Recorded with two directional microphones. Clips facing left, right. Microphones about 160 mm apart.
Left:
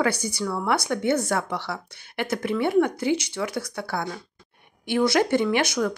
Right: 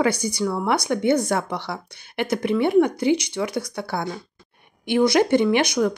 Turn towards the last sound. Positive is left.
turn(degrees=-20)  # may be behind; listen again after turning